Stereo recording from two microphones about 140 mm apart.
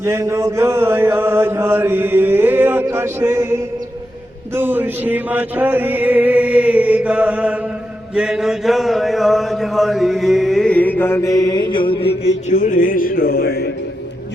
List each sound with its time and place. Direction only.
0.0 s chant: 20° right (ahead or behind)
8.1 s mantra: 5° right (ahead or behind); by 12.5 s 45° left (ahead or behind)
12.5 s music: 75° left (ahead or behind); by 13.5 s 90° left